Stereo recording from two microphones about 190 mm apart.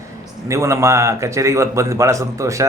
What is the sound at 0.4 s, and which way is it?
A man's voice, 15° right (ahead or behind).